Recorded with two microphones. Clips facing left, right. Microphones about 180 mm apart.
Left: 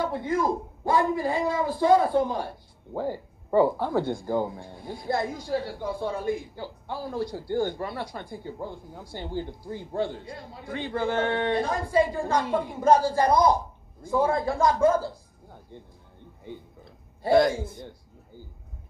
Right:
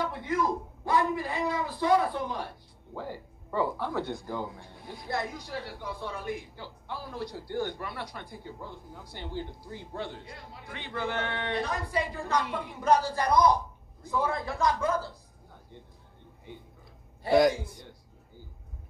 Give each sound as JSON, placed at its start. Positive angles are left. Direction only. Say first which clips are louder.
{"t": 0.0, "sound": "a man's voice", "louder": "left 4 dB", "side_deg": 30}
{"t": 2.9, "sound": "a man's voice", "louder": "left 8 dB", "side_deg": 40}
{"t": 4.9, "sound": "a man's voice", "louder": "left 6 dB", "side_deg": 30}
{"t": 9.9, "sound": "a man's voice", "louder": "left 9 dB", "side_deg": 30}
{"t": 14.1, "sound": "a man's voice", "louder": "left 7 dB", "side_deg": 30}
{"t": 17.3, "sound": "a man's voice", "louder": "left 2 dB", "side_deg": -15}